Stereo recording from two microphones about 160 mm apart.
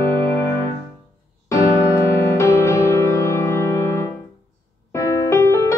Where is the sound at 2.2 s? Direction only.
15° left (ahead or behind).